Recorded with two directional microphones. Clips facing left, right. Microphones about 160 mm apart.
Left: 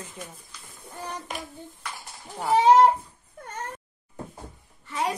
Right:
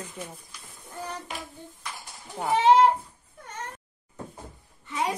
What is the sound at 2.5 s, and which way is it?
Speech, 40° left (ahead or behind).